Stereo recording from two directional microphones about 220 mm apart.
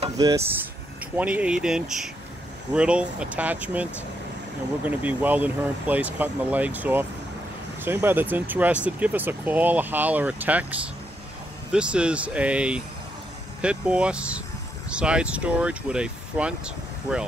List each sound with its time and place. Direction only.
0.2 s speech: 15° right (ahead or behind)